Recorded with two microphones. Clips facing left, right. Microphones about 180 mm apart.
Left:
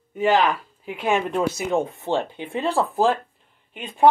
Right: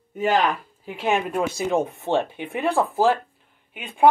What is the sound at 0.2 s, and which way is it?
Speech, 40° right (ahead or behind).